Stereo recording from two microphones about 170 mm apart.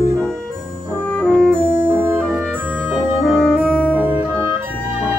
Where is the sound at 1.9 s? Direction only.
15° right (ahead or behind).